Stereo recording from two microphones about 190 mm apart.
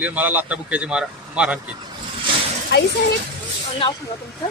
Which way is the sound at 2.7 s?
60° left (ahead or behind).